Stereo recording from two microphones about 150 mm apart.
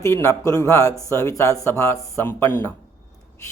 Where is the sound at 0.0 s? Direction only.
20° left (ahead or behind).